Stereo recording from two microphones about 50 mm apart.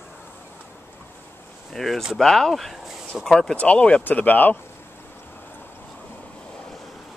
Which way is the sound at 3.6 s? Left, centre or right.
Left.